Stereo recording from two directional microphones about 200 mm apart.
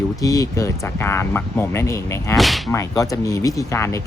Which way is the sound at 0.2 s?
15° left (ahead or behind).